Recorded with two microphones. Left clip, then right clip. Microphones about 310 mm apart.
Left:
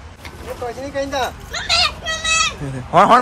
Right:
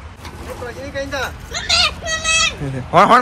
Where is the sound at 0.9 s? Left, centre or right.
Left.